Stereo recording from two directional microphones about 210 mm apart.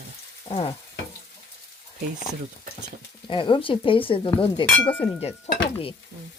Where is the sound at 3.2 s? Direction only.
25° left (ahead or behind).